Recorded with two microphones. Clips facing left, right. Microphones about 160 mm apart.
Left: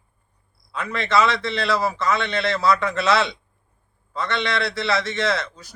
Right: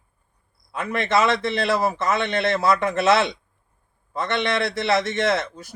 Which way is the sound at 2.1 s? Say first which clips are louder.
Even; 50° right (ahead or behind).